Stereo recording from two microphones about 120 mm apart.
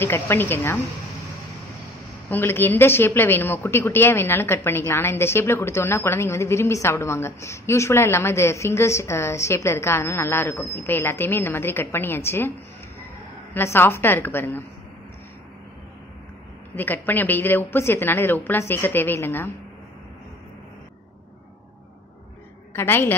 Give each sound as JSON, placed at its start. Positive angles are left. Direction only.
{"t": 0.0, "sound": "a woman's voice", "side_deg": 20}
{"t": 2.2, "sound": "a woman's voice", "side_deg": 15}
{"t": 16.7, "sound": "a woman's voice", "side_deg": 15}
{"t": 22.7, "sound": "a woman's voice", "side_deg": 20}